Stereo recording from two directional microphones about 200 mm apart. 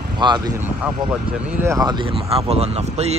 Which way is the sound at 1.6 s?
15° right (ahead or behind).